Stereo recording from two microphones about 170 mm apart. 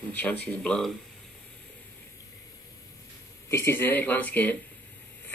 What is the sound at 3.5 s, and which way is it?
Speech, 15° left (ahead or behind).